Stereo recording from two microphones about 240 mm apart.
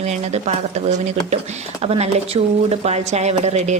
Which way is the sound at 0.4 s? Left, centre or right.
Right.